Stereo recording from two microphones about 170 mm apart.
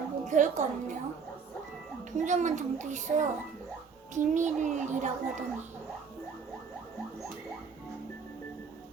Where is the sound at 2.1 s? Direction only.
45° right (ahead or behind).